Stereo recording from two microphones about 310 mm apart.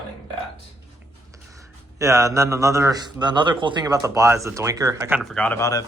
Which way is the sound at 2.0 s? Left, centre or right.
Centre.